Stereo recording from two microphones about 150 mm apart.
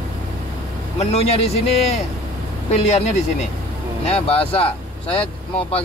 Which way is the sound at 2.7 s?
45° left (ahead or behind).